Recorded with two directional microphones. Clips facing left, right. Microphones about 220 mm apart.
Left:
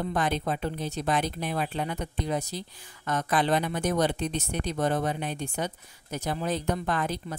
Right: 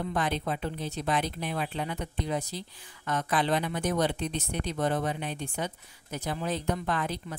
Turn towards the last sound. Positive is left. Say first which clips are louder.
# left 2 dB
turn(degrees=45)  # may be behind; listen again after turning